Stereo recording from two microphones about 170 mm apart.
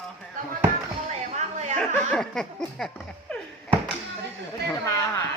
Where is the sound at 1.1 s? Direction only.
45° right (ahead or behind).